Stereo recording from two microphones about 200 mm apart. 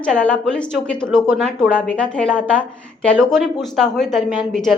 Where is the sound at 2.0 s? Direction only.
5° left (ahead or behind).